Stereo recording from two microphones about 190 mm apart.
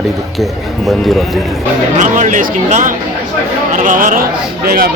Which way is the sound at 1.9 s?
40° right (ahead or behind).